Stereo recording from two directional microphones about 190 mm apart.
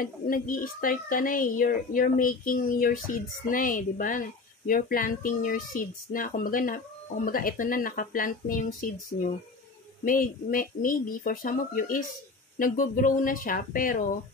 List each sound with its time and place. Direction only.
0.0 s speech: 45° left (ahead or behind)
10.0 s speech: 45° left (ahead or behind)